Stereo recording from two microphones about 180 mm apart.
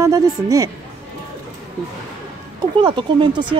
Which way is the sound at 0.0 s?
20° right (ahead or behind).